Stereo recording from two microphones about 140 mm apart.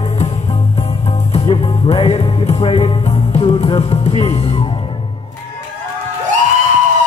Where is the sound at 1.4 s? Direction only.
40° left (ahead or behind).